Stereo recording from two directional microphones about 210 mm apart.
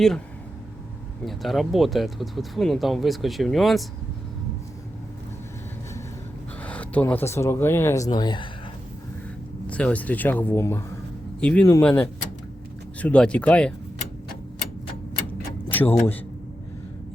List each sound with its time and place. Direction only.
1.2 s speech: centre (ahead or behind)
6.6 s speech: 5° left (ahead or behind)
9.6 s speech: 5° left (ahead or behind)
15.7 s a man's voice: 10° left (ahead or behind)